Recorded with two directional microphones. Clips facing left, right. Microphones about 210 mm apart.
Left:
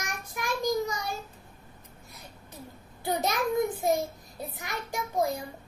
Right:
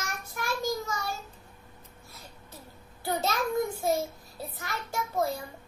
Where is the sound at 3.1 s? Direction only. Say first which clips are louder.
Left 1 dB; 15° left (ahead or behind).